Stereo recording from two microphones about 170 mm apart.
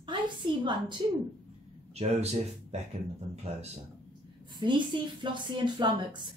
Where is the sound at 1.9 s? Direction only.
40° right (ahead or behind).